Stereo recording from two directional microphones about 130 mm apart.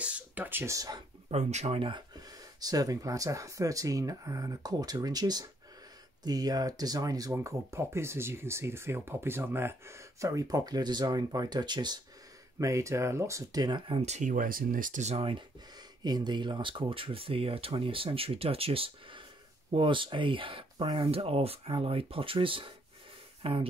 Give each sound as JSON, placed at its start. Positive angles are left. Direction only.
{"t": 0.0, "sound": "speech", "side_deg": -10}
{"t": 1.3, "sound": "speech", "side_deg": -60}
{"t": 1.8, "sound": "speech", "side_deg": -35}
{"t": 12.5, "sound": "speech", "side_deg": -25}
{"t": 14.0, "sound": "speech", "side_deg": -65}
{"t": 16.0, "sound": "speech", "side_deg": -30}